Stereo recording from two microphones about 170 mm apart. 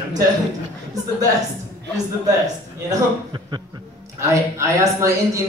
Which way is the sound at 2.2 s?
20° right (ahead or behind).